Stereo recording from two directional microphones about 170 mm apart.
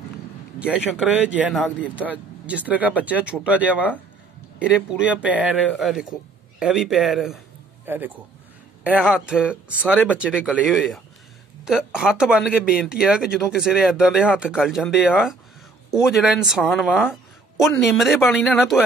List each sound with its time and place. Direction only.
0.9 s a man's voice: 5° right (ahead or behind)